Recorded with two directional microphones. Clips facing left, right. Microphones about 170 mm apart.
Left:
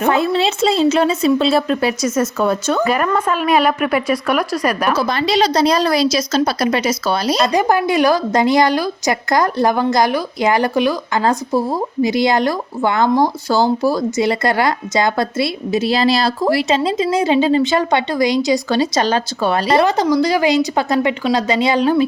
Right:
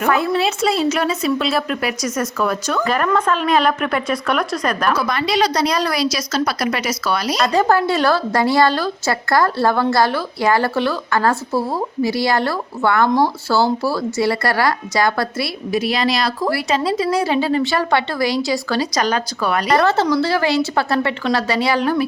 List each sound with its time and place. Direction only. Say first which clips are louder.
0.0 s speech: left 2 dB; 25° left (ahead or behind)
2.8 s a woman's voice: right 2 dB; 5° left (ahead or behind)
4.9 s speech: left 2 dB; 25° left (ahead or behind)
7.5 s a woman's voice: right 2 dB; 15° left (ahead or behind)
19.8 s a woman's voice: left 2 dB; 15° left (ahead or behind)